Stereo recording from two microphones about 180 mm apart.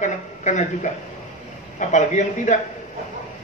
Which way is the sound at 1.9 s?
40° left (ahead or behind).